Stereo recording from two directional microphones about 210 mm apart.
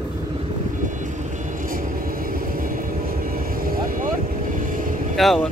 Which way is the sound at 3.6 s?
45° right (ahead or behind).